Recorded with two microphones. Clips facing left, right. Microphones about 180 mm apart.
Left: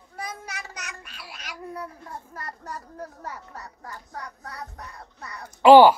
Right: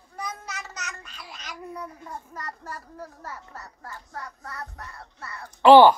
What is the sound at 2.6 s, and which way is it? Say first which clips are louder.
A man's voice: left 2 dB; 15° left (ahead or behind).